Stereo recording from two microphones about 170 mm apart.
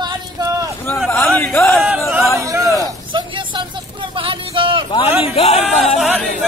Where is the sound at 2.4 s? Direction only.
20° right (ahead or behind).